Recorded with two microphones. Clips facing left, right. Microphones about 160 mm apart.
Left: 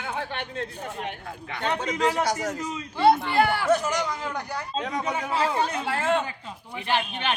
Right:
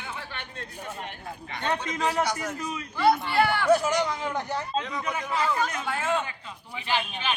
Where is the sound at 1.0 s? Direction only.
70° left (ahead or behind).